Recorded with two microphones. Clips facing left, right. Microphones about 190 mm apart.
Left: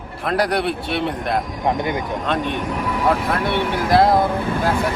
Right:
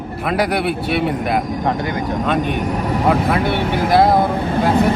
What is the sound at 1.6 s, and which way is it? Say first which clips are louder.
Speech: right 1 dB; 20° left (ahead or behind).